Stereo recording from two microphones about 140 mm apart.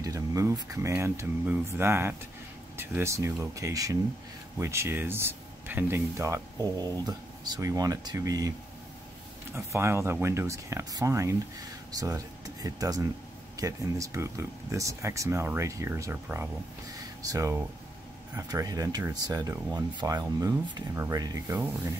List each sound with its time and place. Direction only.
0.0 s speech: 25° right (ahead or behind)
9.7 s speech: 20° right (ahead or behind)